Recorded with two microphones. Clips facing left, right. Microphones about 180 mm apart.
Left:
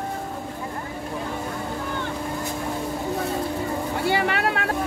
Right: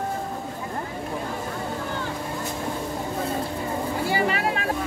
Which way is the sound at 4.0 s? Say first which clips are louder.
Left 2 dB; 70° left (ahead or behind).